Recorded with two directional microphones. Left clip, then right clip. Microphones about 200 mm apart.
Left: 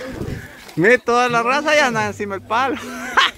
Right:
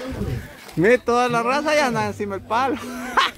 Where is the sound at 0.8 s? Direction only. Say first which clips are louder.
Left 3 dB; centre (ahead or behind).